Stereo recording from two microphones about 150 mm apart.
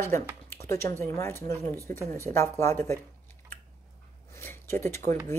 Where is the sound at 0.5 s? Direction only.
20° left (ahead or behind).